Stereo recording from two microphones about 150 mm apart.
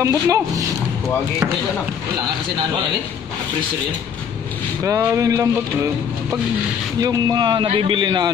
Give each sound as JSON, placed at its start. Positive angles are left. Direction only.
{"t": 0.0, "sound": "speech", "side_deg": -20}
{"t": 4.8, "sound": "speech", "side_deg": -20}
{"t": 7.0, "sound": "a man's voice", "side_deg": -25}